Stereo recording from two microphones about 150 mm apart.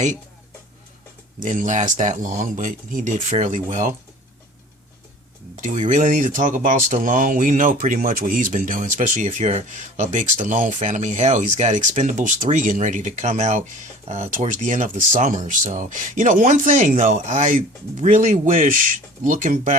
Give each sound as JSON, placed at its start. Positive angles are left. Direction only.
{"t": 1.4, "sound": "speech", "side_deg": -60}
{"t": 5.5, "sound": "speech", "side_deg": -55}